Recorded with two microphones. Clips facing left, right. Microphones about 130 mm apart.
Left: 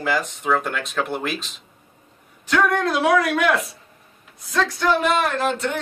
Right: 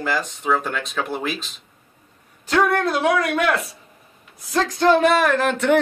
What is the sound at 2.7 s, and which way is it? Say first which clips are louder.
Speech: left 1 dB; centre (ahead or behind).